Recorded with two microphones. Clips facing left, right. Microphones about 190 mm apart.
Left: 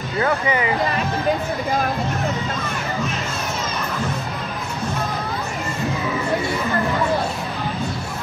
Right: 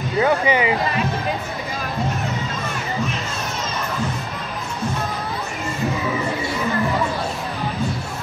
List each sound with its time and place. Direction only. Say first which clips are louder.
0.2 s speech: right 3 dB; 20° right (ahead or behind)